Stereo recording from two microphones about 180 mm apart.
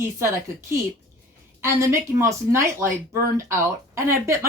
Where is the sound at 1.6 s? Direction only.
15° right (ahead or behind).